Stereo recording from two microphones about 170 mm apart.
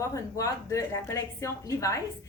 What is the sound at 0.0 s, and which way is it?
A woman's voice, 20° left (ahead or behind).